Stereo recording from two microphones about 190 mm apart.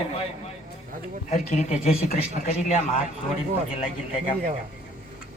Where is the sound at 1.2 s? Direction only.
40° left (ahead or behind).